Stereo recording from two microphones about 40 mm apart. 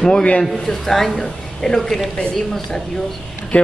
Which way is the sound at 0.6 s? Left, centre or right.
Centre.